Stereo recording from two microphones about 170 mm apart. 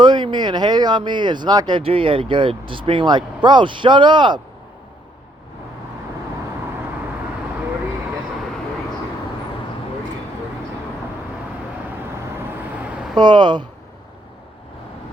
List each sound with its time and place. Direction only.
0.0 s speech: 25° right (ahead or behind)
13.1 s speech: 25° right (ahead or behind)